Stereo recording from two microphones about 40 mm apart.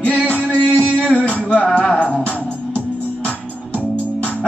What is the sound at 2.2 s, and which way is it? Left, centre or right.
Music, left.